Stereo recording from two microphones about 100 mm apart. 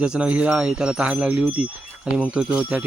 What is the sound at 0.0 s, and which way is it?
Speech, 10° right (ahead or behind).